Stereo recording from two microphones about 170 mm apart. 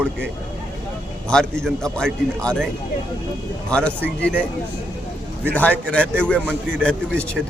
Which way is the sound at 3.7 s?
5° left (ahead or behind).